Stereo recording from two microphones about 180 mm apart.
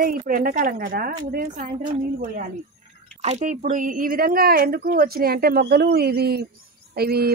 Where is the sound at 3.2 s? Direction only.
40° right (ahead or behind).